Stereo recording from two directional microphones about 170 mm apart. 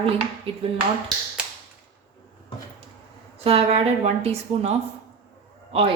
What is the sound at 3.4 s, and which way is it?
Speech, 35° right (ahead or behind).